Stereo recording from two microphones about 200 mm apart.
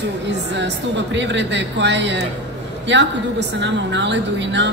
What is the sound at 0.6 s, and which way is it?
A woman's voice, 60° right (ahead or behind).